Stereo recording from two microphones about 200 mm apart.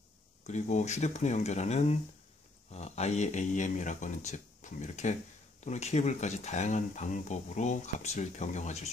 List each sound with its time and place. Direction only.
0.4 s speech: 35° left (ahead or behind)